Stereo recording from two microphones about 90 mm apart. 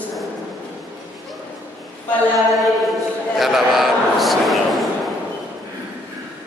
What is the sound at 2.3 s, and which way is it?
Speech, centre (ahead or behind).